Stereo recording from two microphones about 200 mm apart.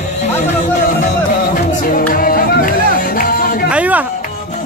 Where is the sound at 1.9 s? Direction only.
45° left (ahead or behind).